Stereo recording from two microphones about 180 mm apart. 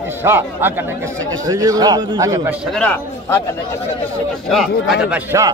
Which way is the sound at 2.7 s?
10° left (ahead or behind).